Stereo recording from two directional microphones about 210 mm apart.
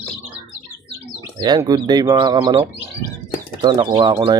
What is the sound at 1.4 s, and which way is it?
Speech, 20° right (ahead or behind).